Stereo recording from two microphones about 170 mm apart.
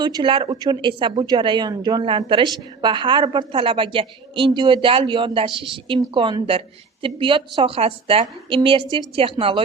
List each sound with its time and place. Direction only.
0.0 s a woman's voice: 25° right (ahead or behind)